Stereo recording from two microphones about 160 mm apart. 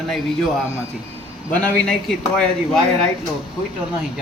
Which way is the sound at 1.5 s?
10° left (ahead or behind).